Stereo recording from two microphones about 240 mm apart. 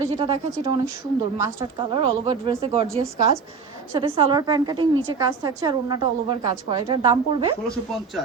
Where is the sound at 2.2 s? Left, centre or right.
Right.